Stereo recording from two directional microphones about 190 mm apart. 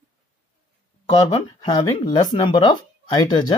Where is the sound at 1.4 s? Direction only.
25° left (ahead or behind).